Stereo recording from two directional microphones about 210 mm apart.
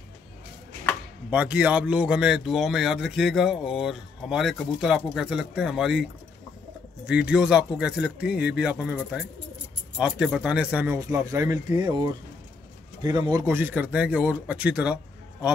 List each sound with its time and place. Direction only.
1.3 s speech: 5° right (ahead or behind)
7.1 s speech: 5° right (ahead or behind)